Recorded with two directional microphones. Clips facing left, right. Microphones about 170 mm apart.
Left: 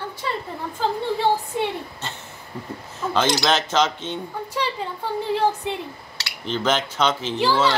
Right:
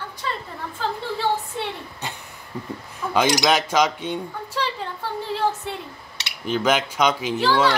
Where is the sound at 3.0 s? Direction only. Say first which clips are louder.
Right 1 dB; 10° right (ahead or behind).